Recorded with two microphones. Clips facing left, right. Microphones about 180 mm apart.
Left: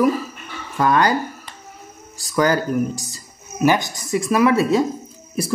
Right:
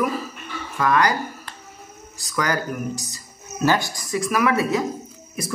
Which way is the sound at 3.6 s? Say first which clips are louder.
Left 3 dB; 15° left (ahead or behind).